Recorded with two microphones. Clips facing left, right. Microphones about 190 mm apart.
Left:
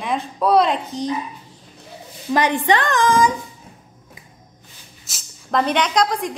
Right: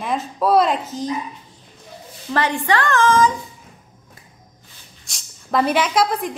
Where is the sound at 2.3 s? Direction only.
15° left (ahead or behind).